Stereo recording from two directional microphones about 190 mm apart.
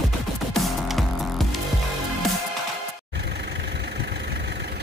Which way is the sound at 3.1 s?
65° right (ahead or behind).